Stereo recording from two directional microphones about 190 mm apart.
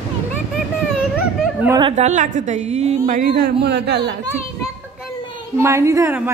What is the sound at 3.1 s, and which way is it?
Speech, 55° right (ahead or behind).